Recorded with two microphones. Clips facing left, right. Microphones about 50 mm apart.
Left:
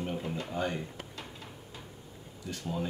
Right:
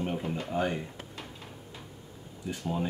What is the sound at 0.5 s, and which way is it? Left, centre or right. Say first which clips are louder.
Speech: right 4 dB; centre.